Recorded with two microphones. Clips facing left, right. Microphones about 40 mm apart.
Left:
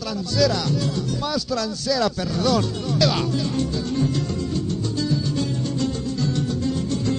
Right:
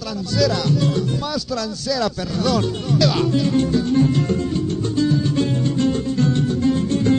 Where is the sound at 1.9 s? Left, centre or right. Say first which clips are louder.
Even; centre.